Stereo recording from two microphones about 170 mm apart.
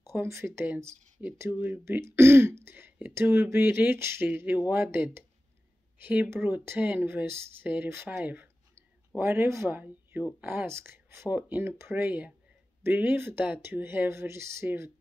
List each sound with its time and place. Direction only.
0.0 s speech: 15° right (ahead or behind)